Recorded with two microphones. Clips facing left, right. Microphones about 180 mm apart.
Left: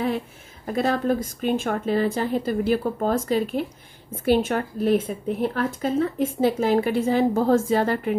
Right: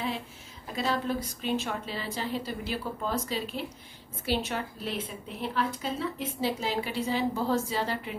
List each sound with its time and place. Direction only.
0.7 s speech: 55° left (ahead or behind)